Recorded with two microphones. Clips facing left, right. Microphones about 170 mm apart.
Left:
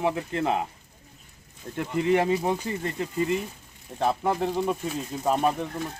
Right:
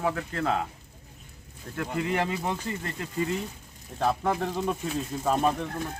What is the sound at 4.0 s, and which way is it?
Speech, 10° left (ahead or behind).